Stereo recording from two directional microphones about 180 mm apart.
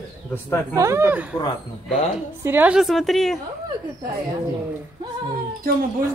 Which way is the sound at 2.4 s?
10° right (ahead or behind).